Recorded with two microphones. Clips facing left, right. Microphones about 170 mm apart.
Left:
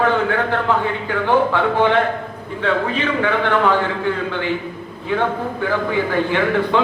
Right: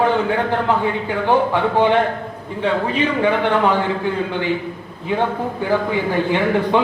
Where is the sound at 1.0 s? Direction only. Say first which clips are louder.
Left 2 dB; 15° right (ahead or behind).